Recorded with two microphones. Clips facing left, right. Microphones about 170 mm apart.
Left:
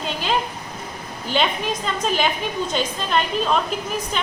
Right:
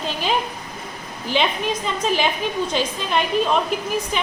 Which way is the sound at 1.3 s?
Centre (ahead or behind).